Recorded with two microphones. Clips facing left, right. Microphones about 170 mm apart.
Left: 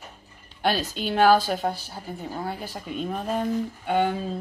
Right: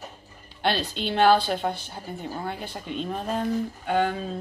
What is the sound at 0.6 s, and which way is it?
A woman's voice, 5° left (ahead or behind).